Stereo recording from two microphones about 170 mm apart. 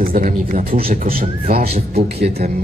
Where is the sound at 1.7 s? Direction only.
40° right (ahead or behind).